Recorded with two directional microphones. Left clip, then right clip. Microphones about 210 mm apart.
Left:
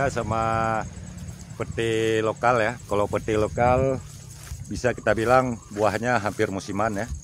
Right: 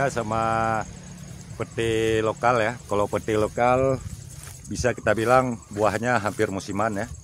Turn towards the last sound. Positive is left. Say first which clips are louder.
# even
turn(degrees=-5)  # may be behind; listen again after turning